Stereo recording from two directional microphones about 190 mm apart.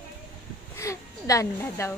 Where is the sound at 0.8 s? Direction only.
15° left (ahead or behind).